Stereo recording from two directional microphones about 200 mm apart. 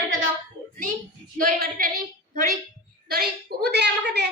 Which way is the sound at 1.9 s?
45° right (ahead or behind).